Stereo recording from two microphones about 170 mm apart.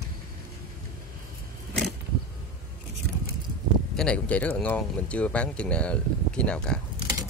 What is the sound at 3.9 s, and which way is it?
A man's voice, 5° left (ahead or behind).